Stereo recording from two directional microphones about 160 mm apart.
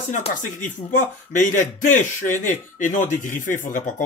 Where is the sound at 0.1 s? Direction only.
50° left (ahead or behind).